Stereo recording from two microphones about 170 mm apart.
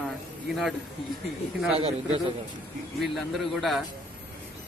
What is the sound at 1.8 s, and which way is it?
Speech, 35° right (ahead or behind).